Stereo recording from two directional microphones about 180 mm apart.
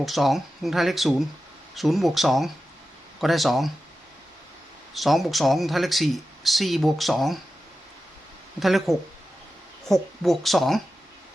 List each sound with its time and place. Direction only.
0.0 s speech: centre (ahead or behind)
4.9 s speech: centre (ahead or behind)
8.5 s speech: centre (ahead or behind)